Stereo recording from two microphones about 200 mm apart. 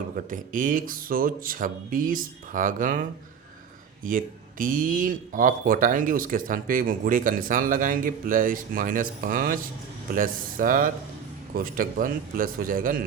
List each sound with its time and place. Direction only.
0.3 s speech: 40° right (ahead or behind)